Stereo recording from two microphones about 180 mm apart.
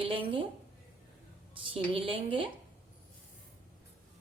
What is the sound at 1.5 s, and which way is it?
A woman's voice, 30° right (ahead or behind).